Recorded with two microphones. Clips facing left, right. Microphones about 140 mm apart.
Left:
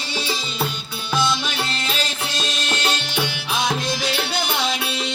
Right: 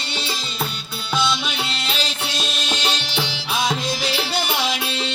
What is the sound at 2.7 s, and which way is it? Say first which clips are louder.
Music: left 1 dB; 15° right (ahead or behind).